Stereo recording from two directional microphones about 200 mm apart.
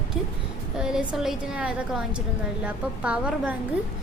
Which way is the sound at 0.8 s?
5° right (ahead or behind).